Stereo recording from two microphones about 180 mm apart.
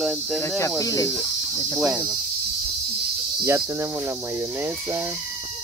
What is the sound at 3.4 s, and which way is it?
Speech, 15° right (ahead or behind).